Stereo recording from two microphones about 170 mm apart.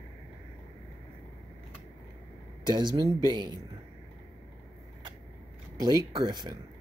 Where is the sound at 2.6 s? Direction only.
25° right (ahead or behind).